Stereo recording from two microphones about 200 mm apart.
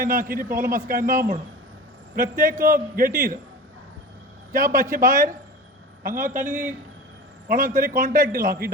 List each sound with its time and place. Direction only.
0.0 s a man's voice: 45° right (ahead or behind)
4.5 s a man's voice: 45° right (ahead or behind)